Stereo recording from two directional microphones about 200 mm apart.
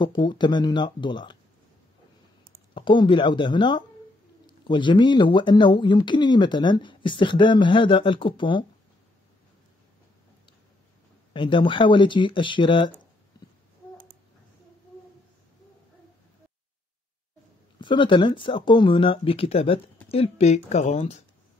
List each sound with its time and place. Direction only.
0.0 s speech: 25° left (ahead or behind)
2.7 s speech: 25° left (ahead or behind)
11.3 s speech: 25° left (ahead or behind)
13.4 s babbling: 20° left (ahead or behind)
17.7 s speech: 25° left (ahead or behind)